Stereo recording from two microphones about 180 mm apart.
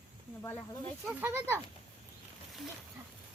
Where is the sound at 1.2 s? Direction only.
10° right (ahead or behind).